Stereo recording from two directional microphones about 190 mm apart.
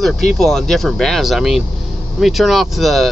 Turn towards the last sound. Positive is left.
turn(degrees=0)  # may be behind; listen again after turning